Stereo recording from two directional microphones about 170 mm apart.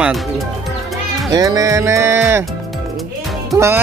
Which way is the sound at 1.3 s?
20° right (ahead or behind).